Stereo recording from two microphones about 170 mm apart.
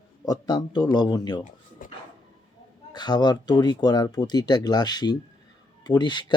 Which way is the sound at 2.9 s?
25° left (ahead or behind).